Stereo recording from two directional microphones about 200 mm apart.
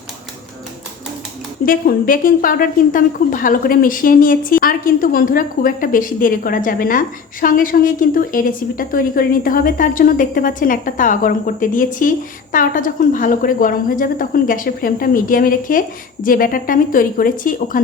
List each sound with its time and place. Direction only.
1.6 s a woman's voice: 45° left (ahead or behind)